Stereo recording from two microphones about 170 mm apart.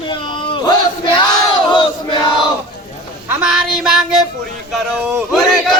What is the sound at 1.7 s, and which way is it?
Crowd, 25° left (ahead or behind).